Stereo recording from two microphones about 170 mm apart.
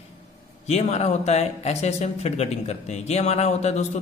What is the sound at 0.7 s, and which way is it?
Speech, 40° left (ahead or behind).